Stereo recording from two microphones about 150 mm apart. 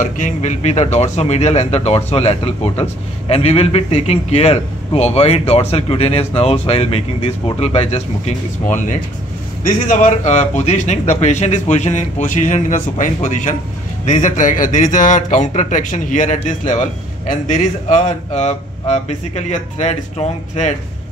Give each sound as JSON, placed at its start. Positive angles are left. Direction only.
{"t": 0.0, "sound": "speech", "side_deg": 55}